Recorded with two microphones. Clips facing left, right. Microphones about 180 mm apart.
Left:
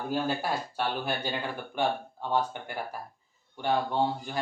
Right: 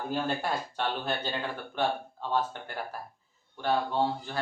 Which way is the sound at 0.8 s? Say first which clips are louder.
Left 1 dB; 10° left (ahead or behind).